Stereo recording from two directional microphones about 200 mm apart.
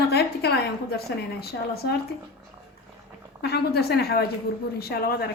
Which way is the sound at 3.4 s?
50° left (ahead or behind).